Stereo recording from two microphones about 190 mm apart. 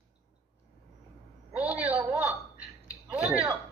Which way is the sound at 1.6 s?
30° right (ahead or behind).